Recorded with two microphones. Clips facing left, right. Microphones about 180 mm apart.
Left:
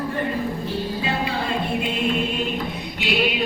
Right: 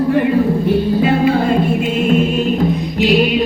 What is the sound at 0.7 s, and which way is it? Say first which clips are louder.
Music: right 12 dB; 50° right (ahead or behind).